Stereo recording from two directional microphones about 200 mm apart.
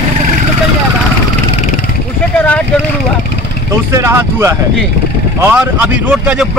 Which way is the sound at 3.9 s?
15° right (ahead or behind).